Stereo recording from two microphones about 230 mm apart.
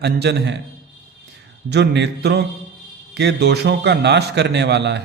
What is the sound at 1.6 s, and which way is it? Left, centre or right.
A man's voice, right.